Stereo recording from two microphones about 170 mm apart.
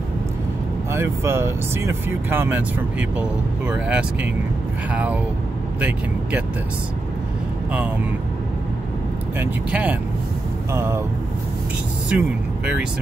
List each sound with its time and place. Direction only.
0.9 s speech: 15° right (ahead or behind)
9.4 s speech: 10° right (ahead or behind)
12.1 s speech: 5° right (ahead or behind)